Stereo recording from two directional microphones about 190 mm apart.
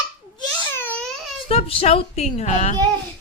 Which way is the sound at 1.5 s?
30° left (ahead or behind).